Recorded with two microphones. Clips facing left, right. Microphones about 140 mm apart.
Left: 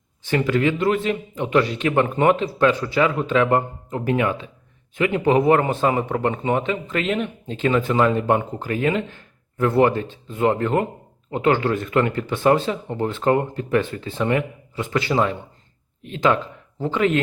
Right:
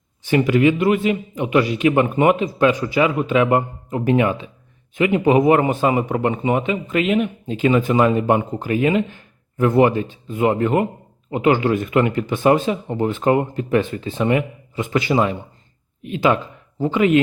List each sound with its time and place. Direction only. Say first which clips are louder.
0.3 s a man's voice: right 4 dB; 15° right (ahead or behind)